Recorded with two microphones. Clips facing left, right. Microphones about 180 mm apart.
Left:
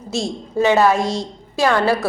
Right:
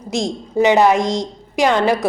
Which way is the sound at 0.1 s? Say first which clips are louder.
Right 2 dB; 15° right (ahead or behind).